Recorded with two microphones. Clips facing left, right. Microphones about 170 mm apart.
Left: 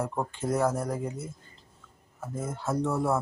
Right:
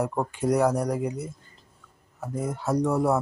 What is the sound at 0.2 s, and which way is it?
Speech, 15° right (ahead or behind).